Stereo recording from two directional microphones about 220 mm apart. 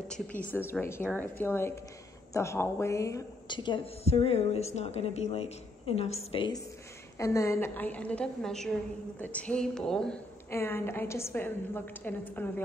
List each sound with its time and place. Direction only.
0.1 s a woman's voice: 5° left (ahead or behind)